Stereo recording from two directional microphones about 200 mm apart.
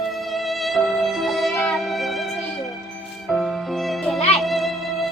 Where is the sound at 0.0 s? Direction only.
Centre (ahead or behind).